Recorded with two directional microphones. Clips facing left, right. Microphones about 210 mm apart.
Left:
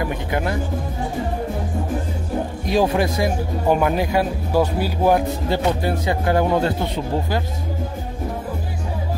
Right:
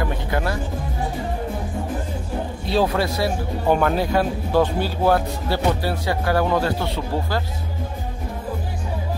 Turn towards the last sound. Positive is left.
turn(degrees=20)  # may be behind; listen again after turning